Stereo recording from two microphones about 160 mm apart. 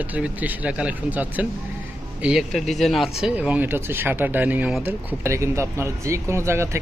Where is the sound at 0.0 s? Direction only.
10° right (ahead or behind).